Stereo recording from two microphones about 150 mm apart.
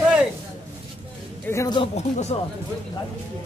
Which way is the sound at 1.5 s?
20° left (ahead or behind).